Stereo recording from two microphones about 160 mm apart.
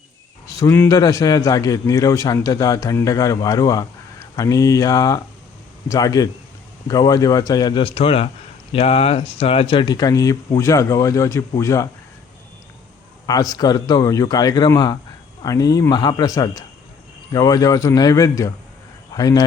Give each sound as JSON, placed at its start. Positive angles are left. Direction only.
{"t": 0.4, "sound": "a man's voice", "side_deg": 20}
{"t": 13.2, "sound": "a man's voice", "side_deg": 25}